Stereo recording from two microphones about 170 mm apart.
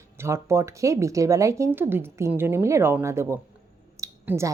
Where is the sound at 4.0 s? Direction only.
15° right (ahead or behind).